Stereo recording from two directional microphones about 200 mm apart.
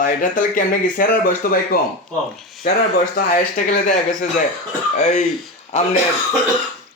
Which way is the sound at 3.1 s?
45° left (ahead or behind).